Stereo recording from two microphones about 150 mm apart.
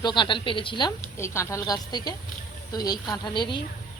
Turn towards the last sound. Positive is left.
turn(degrees=30)  # may be behind; listen again after turning